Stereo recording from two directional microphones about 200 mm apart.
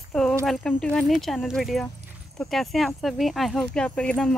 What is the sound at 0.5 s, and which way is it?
Speech, 5° left (ahead or behind).